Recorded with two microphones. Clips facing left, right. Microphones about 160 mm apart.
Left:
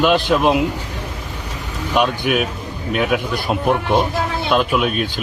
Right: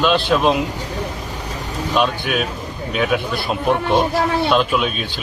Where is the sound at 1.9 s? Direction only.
10° left (ahead or behind).